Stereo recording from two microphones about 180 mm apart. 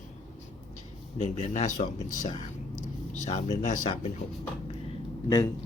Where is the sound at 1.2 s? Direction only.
35° left (ahead or behind).